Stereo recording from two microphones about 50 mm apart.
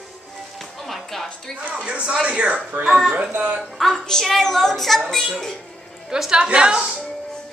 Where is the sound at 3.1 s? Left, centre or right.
Right.